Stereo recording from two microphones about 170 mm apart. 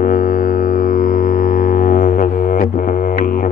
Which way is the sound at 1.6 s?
55° left (ahead or behind).